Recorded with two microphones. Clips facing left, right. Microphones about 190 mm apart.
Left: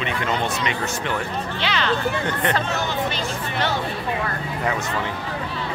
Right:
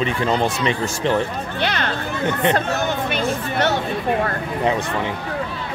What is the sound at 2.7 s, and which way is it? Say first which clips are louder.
Speech: right 3 dB; 50° right (ahead or behind).